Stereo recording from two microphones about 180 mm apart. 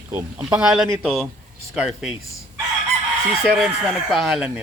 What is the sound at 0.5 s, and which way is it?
Speech, 5° right (ahead or behind).